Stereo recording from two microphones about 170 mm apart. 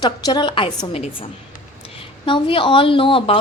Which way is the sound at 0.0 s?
25° left (ahead or behind).